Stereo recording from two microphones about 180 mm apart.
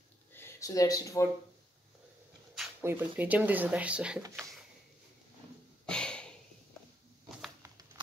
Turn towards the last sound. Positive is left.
turn(degrees=5)  # may be behind; listen again after turning